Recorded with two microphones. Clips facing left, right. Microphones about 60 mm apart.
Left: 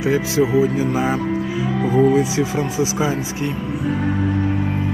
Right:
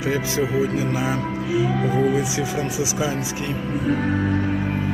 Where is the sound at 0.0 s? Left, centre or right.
Left.